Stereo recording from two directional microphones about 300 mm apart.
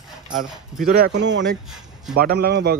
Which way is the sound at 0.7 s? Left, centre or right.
Right.